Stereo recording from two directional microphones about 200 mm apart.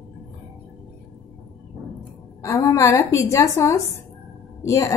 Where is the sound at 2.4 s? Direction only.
15° left (ahead or behind).